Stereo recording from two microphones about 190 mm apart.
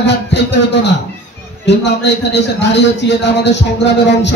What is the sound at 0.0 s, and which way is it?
Speech, 65° left (ahead or behind).